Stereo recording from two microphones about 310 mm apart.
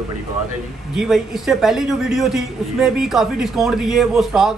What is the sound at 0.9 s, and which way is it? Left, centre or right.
A man's voice, centre.